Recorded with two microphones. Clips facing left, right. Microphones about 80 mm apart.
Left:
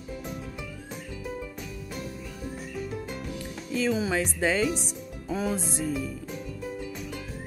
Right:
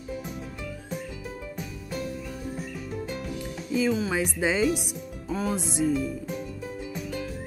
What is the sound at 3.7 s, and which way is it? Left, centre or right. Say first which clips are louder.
Speech: right 1 dB; centre.